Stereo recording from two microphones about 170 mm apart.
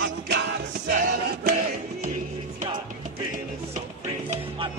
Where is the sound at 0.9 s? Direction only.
55° right (ahead or behind).